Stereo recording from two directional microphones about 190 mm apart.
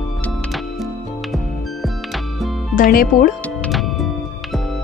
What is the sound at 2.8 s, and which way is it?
Speech, 45° left (ahead or behind).